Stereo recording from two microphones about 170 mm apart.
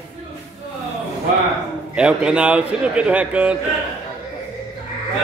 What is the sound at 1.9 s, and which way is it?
Speech, 5° right (ahead or behind).